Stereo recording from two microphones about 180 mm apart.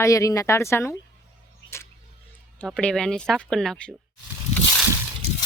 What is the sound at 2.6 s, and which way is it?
Speech, 5° left (ahead or behind).